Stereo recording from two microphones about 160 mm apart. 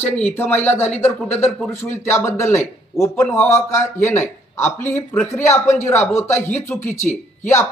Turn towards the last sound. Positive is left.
turn(degrees=50)  # may be behind; listen again after turning